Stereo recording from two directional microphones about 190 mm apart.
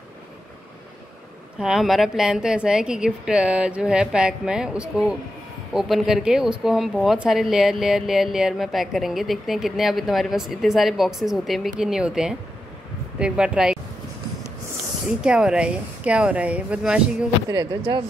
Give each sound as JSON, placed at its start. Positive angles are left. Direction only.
{"t": 1.6, "sound": "speech", "side_deg": 0}
{"t": 15.0, "sound": "speech", "side_deg": -5}
{"t": 17.5, "sound": "speech", "side_deg": -25}